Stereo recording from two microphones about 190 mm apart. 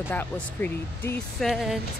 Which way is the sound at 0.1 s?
10° left (ahead or behind).